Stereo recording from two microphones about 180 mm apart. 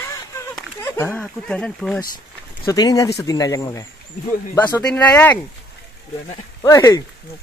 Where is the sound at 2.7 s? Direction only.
20° left (ahead or behind).